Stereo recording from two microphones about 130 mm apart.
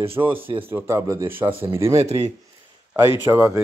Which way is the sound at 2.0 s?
55° right (ahead or behind).